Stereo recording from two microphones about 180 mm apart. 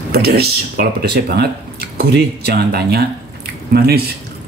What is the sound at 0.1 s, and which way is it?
Speech, 60° right (ahead or behind).